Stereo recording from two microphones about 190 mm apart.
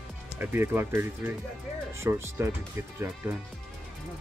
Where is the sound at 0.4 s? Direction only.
10° right (ahead or behind).